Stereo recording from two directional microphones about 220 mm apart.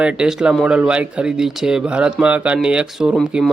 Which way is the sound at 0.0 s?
5° right (ahead or behind).